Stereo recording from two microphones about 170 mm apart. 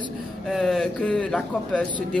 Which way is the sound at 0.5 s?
Centre (ahead or behind).